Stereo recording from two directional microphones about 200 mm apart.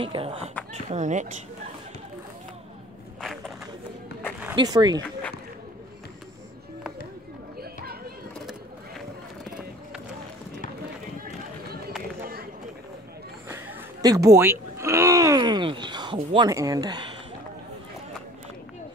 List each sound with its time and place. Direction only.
0.0 s speech: 25° right (ahead or behind)
0.8 s speech: 35° right (ahead or behind)
3.2 s walk: centre (ahead or behind)
4.6 s speech: 20° right (ahead or behind)
12.2 s a sound: 50° right (ahead or behind)
14.0 s speech: 15° right (ahead or behind)